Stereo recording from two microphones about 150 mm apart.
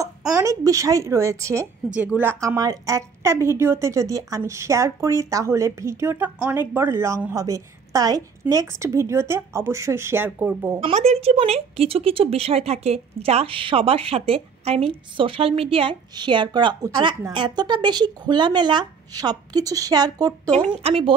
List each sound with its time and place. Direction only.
0.3 s a woman's voice: 20° right (ahead or behind)
10.8 s a woman's voice: 45° right (ahead or behind); by 20.5 s 25° right (ahead or behind)
20.8 s a woman's voice: 35° right (ahead or behind)